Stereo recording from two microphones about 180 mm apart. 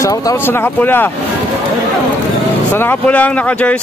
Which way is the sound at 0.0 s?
20° left (ahead or behind).